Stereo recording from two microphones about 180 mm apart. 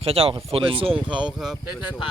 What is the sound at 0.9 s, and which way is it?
Speech, 5° right (ahead or behind).